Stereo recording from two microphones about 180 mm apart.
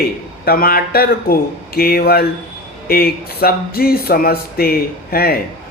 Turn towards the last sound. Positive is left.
turn(degrees=55)  # may be behind; listen again after turning